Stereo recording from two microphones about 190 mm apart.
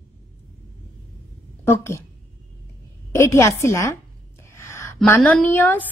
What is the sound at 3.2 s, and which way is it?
Speech, 15° left (ahead or behind).